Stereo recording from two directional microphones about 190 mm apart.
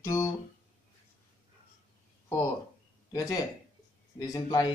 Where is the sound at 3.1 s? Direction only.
20° left (ahead or behind).